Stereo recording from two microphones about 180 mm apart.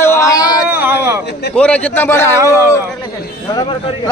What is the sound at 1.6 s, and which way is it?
Speech, 5° left (ahead or behind).